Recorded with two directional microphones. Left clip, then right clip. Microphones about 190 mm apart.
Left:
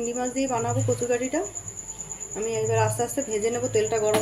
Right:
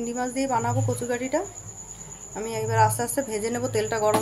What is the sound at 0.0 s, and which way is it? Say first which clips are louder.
Speech: left 1 dB; 20° right (ahead or behind).